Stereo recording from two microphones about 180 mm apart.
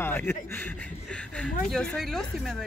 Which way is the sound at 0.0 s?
10° left (ahead or behind).